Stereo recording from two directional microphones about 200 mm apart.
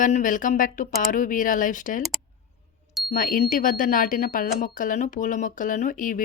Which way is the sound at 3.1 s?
45° left (ahead or behind).